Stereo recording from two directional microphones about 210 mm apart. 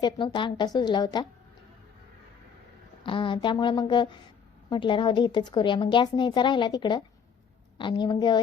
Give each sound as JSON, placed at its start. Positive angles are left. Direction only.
{"t": 0.0, "sound": "a woman's voice", "side_deg": 20}
{"t": 3.0, "sound": "a woman's voice", "side_deg": 25}